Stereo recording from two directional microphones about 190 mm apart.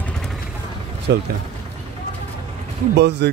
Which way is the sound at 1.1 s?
65° right (ahead or behind).